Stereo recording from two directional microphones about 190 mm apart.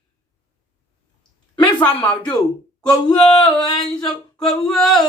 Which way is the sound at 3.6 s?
20° left (ahead or behind).